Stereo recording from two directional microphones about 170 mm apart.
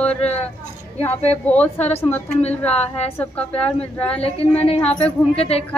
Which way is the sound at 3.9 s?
10° left (ahead or behind).